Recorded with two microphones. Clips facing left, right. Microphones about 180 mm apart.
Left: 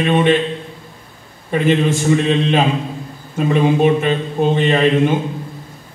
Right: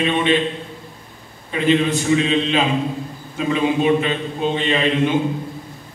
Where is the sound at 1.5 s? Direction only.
50° left (ahead or behind).